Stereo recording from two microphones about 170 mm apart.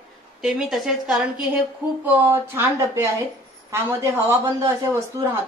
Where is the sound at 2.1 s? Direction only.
15° right (ahead or behind).